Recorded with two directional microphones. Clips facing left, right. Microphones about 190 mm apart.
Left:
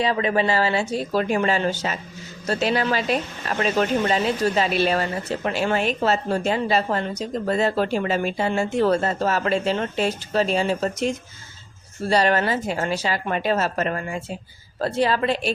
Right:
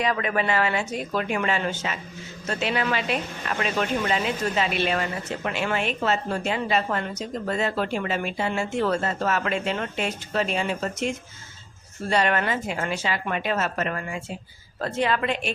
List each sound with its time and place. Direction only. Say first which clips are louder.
0.0 s speech: left 4 dB; 30° left (ahead or behind)